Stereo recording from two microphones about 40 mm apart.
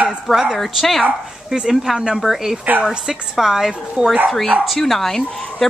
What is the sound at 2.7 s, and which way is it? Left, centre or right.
Speech, right.